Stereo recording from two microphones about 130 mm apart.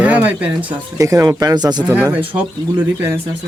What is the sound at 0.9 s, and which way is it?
Speech, 25° right (ahead or behind).